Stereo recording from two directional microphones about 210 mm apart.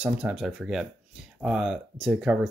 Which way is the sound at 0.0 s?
5° right (ahead or behind).